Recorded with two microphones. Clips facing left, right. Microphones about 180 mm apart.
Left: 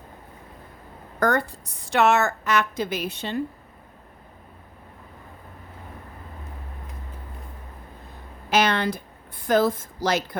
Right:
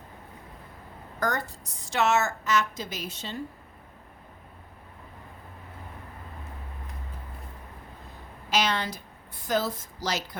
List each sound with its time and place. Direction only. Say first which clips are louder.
1.2 s a woman's voice: left 7 dB; 55° left (ahead or behind)
8.4 s a sound: left 6 dB; 60° left (ahead or behind)
9.4 s a woman's voice: left 7 dB; 55° left (ahead or behind)